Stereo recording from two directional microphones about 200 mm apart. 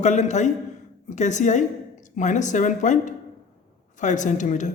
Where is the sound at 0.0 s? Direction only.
35° left (ahead or behind).